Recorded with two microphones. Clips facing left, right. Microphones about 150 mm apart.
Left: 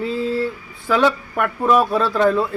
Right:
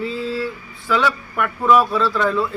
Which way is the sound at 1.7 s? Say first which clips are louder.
Left 1 dB; 50° left (ahead or behind).